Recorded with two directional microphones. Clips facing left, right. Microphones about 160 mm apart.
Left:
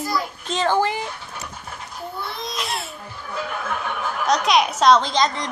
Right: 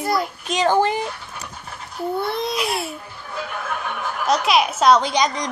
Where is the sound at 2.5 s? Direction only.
5° right (ahead or behind).